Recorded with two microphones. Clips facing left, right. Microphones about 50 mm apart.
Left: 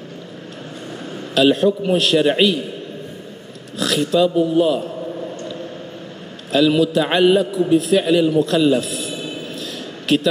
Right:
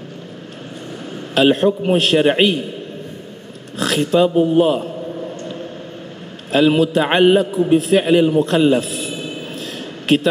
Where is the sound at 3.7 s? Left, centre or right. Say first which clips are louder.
Right 2 dB; centre.